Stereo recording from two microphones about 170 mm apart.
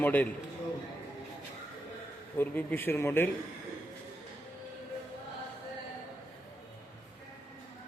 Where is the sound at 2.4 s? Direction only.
10° left (ahead or behind).